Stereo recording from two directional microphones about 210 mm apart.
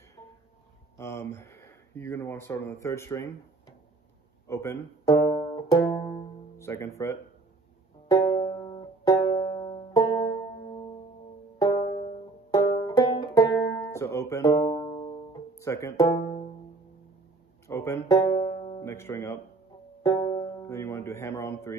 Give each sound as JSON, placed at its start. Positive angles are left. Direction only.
{"t": 0.9, "sound": "speech", "side_deg": 15}
{"t": 4.5, "sound": "banjo", "side_deg": 15}
{"t": 8.1, "sound": "music", "side_deg": 20}
{"t": 12.5, "sound": "banjo", "side_deg": 20}
{"t": 15.6, "sound": "speech", "side_deg": 15}
{"t": 17.6, "sound": "speech", "side_deg": 15}